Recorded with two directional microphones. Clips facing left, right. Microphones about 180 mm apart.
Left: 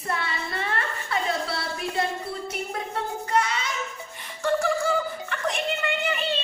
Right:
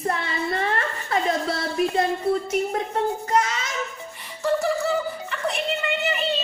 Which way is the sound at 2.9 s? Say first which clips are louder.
Right 1 dB; 40° right (ahead or behind).